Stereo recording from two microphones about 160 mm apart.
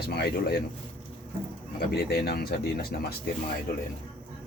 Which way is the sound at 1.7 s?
80° left.